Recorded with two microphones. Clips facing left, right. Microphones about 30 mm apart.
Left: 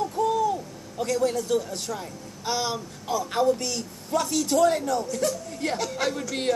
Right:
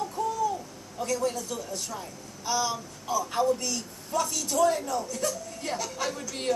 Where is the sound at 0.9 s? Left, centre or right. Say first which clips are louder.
Left 4 dB; left.